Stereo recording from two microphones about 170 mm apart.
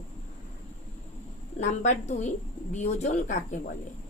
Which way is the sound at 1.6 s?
45° left (ahead or behind).